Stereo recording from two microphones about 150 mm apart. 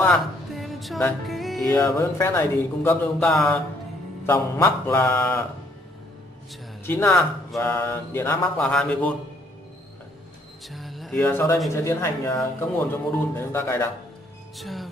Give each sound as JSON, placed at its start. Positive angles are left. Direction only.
{"t": 0.0, "sound": "music", "side_deg": 0}
{"t": 1.7, "sound": "a man's voice", "side_deg": 20}
{"t": 4.3, "sound": "a man's voice", "side_deg": 15}
{"t": 6.9, "sound": "a man's voice", "side_deg": 15}
{"t": 10.7, "sound": "a sound", "side_deg": 0}
{"t": 11.2, "sound": "a man's voice", "side_deg": 15}
{"t": 14.6, "sound": "speech", "side_deg": 0}